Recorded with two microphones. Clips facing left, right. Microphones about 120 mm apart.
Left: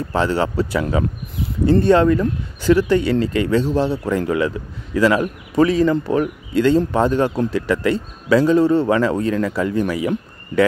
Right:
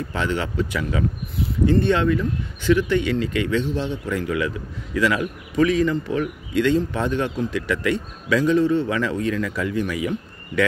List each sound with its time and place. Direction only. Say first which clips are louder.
0.1 s speech: left 8 dB; 35° left (ahead or behind)